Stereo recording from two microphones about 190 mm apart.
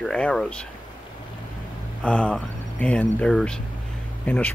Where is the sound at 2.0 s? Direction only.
5° left (ahead or behind).